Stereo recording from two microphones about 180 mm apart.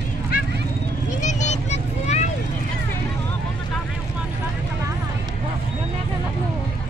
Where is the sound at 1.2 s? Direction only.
40° left (ahead or behind).